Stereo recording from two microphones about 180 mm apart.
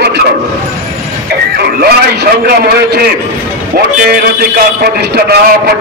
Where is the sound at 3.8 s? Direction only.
55° right (ahead or behind).